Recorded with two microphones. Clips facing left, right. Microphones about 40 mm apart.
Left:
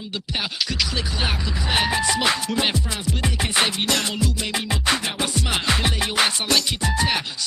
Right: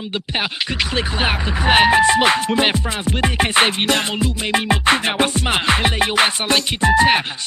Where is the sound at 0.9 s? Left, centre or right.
Right.